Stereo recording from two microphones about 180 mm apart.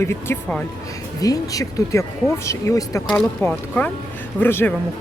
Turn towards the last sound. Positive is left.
turn(degrees=10)  # may be behind; listen again after turning